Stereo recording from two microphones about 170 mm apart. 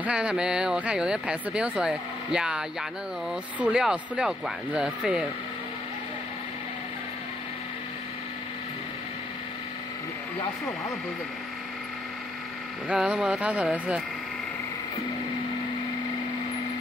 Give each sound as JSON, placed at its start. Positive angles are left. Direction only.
{"t": 0.0, "sound": "speech", "side_deg": -5}
{"t": 12.8, "sound": "speech", "side_deg": -5}